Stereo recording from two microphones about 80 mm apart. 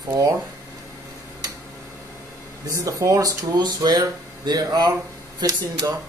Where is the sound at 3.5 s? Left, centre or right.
Right.